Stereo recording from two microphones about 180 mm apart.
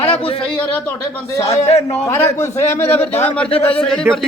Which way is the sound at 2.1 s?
15° left (ahead or behind).